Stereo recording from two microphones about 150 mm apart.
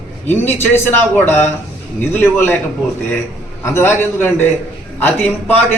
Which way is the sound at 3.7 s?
15° left (ahead or behind).